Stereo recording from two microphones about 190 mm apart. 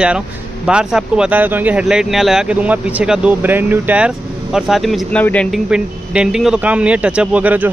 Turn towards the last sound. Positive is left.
turn(degrees=-10)  # may be behind; listen again after turning